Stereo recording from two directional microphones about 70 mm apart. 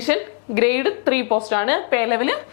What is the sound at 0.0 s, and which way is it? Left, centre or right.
A woman's voice, centre.